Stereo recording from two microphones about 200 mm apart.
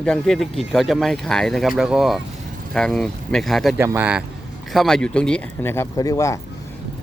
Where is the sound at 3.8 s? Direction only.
10° right (ahead or behind); by 6.3 s 15° left (ahead or behind).